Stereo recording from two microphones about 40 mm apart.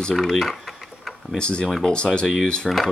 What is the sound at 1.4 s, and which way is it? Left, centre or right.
Speech, left.